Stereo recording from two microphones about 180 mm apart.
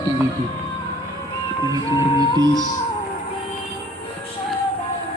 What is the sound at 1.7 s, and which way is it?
Music, 20° right (ahead or behind).